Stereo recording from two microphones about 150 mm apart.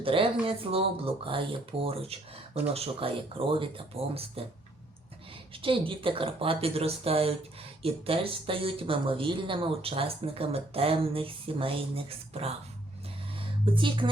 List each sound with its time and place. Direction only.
0.0 s speech: 35° right (ahead or behind)
5.6 s speech: 35° right (ahead or behind)